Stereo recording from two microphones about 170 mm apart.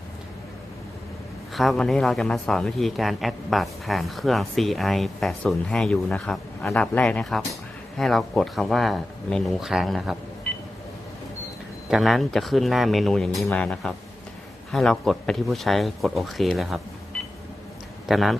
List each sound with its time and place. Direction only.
1.5 s speech: centre (ahead or behind)
11.9 s speech: centre (ahead or behind)
18.0 s a man's voice: centre (ahead or behind)